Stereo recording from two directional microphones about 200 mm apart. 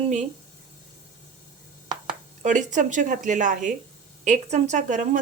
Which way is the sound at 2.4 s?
40° right (ahead or behind).